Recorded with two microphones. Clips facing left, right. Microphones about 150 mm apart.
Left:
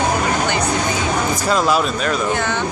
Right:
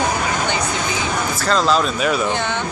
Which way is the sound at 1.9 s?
5° right (ahead or behind).